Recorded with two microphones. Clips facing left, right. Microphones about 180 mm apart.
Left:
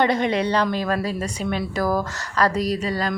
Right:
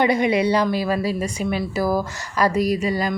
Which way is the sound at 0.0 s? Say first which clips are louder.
Right 2 dB; 10° right (ahead or behind).